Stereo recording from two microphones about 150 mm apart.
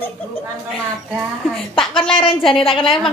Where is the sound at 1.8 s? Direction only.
35° left (ahead or behind).